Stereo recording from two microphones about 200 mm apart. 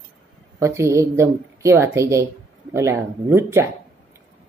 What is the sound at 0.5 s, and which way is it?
Speech, 15° right (ahead or behind).